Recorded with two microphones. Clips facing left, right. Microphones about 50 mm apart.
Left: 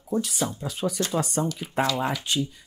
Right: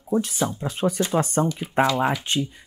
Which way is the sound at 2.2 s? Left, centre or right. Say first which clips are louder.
Right 2 dB; right.